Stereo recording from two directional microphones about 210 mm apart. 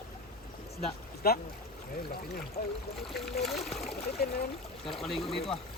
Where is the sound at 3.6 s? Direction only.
Centre (ahead or behind).